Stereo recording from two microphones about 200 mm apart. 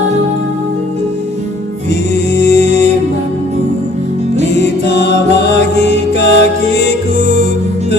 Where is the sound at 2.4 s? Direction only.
60° left (ahead or behind).